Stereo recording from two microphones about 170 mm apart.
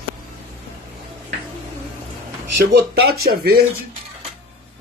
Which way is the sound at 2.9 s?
65° right (ahead or behind).